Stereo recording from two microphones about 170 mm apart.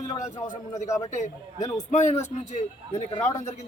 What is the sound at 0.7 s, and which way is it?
Speech, 20° left (ahead or behind).